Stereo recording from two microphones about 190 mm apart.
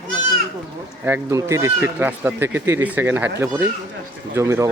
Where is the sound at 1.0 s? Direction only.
15° right (ahead or behind).